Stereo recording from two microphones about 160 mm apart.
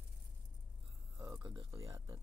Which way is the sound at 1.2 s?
25° right (ahead or behind).